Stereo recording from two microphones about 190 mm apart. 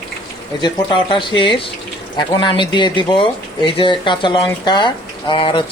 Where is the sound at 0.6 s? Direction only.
25° left (ahead or behind).